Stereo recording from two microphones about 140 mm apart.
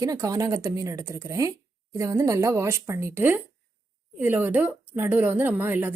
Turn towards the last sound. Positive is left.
turn(degrees=-15)  # may be behind; listen again after turning